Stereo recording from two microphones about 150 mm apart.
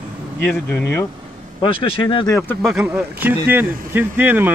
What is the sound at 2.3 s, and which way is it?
Speech, 15° left (ahead or behind).